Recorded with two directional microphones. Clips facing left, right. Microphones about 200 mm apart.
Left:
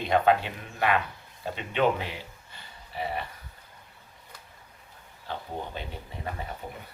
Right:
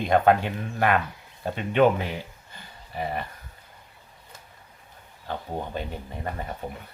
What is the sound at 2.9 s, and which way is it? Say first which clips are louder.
Speech: right 2 dB; 50° right (ahead or behind).